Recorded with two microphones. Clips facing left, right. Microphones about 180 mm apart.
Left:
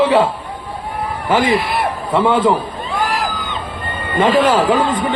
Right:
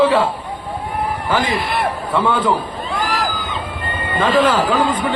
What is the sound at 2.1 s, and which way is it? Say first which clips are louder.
Speech: left 4 dB; 25° left (ahead or behind).